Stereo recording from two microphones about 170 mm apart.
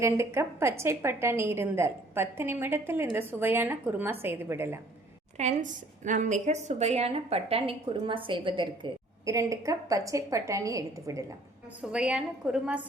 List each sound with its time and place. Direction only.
0.0 s a woman's voice: 15° right (ahead or behind)
5.4 s a woman's voice: 45° right (ahead or behind); by 11.3 s 20° right (ahead or behind)
11.8 s a woman's voice: 5° right (ahead or behind)